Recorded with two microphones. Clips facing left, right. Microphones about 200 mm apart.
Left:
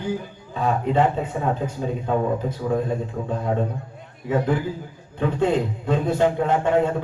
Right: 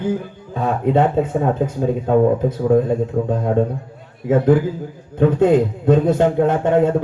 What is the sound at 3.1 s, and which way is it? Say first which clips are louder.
Speech: right 9 dB; 45° right (ahead or behind).